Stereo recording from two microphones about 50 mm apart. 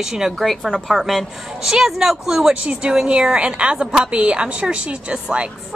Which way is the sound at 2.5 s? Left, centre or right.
Centre.